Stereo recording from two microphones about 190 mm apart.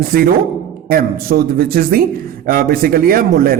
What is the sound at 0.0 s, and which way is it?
A man's voice, 50° right (ahead or behind).